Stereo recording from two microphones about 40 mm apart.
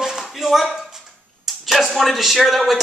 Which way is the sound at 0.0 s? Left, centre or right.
Centre.